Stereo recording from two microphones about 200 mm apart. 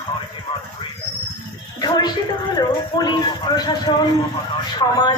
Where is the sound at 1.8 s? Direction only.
20° left (ahead or behind).